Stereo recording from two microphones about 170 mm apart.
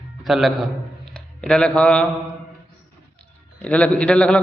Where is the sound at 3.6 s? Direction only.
5° left (ahead or behind).